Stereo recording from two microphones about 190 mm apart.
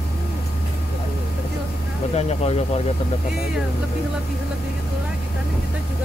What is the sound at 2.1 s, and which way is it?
Speech, 35° left (ahead or behind).